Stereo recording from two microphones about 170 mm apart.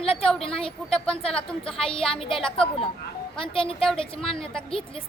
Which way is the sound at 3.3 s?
30° left (ahead or behind).